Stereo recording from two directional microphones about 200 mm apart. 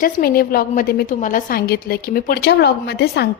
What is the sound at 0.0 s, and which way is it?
A woman's voice, 50° left (ahead or behind).